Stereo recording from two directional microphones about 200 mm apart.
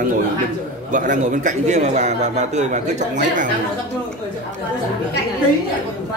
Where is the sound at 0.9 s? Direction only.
40° right (ahead or behind).